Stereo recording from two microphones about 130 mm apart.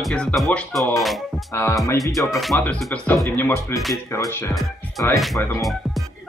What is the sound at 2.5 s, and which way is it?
Speech, 15° left (ahead or behind).